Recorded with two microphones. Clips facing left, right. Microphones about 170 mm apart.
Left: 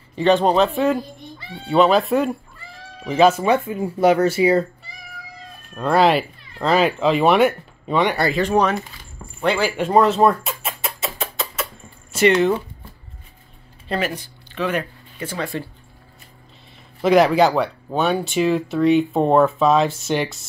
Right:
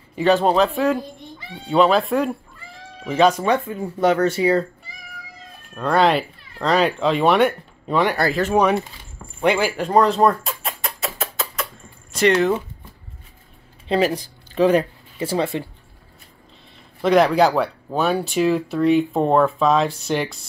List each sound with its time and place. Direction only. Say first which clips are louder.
0.1 s speech: left 1 dB; 5° right (ahead or behind)
5.8 s speech: left 1 dB; 5° left (ahead or behind); by 9.7 s 15° right (ahead or behind)
9.7 s speech: left 1 dB; 5° left (ahead or behind)
10.6 s music: left 1 dB; centre (ahead or behind)
12.3 s speech: left 1 dB; centre (ahead or behind)
13.8 s speech: right 5 dB; 30° right (ahead or behind)
17.0 s speech: left 1 dB; 5° left (ahead or behind)